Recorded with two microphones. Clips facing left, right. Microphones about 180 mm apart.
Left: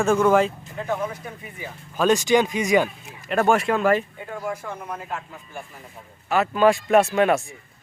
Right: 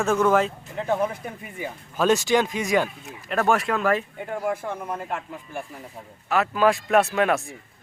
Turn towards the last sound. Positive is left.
turn(degrees=0)  # may be behind; listen again after turning